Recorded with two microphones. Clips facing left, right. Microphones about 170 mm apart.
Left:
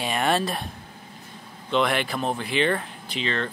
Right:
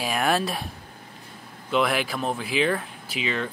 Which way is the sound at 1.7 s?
5° right (ahead or behind).